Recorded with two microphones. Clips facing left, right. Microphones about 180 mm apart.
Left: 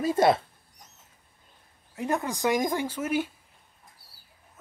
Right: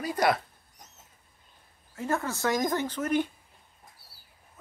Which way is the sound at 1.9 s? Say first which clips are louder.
Left 2 dB; 15° left (ahead or behind).